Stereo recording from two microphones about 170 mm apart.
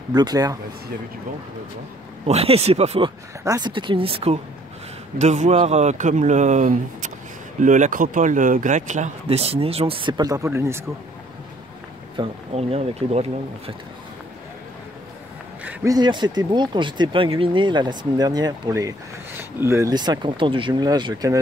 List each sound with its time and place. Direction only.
0.1 s speech: 25° right (ahead or behind)
2.2 s speech: 35° right (ahead or behind)
3.4 s speech: 25° right (ahead or behind)
12.2 s speech: 35° right (ahead or behind)
15.6 s speech: 20° right (ahead or behind)